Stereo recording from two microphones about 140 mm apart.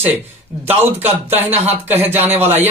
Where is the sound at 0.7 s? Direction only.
15° right (ahead or behind).